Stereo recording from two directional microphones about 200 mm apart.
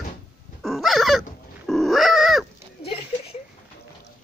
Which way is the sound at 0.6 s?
Centre (ahead or behind).